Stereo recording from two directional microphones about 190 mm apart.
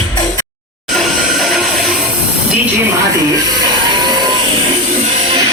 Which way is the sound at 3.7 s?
20° right (ahead or behind).